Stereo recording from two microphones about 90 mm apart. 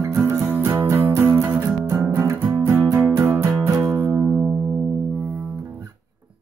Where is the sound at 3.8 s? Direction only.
25° right (ahead or behind).